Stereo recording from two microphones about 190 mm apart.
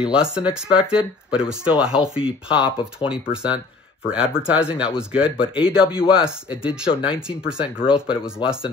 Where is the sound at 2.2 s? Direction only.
25° left (ahead or behind).